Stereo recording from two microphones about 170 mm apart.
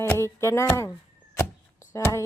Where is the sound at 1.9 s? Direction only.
20° left (ahead or behind).